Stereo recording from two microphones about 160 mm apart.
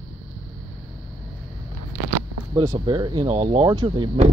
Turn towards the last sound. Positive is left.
turn(degrees=-30)  # may be behind; listen again after turning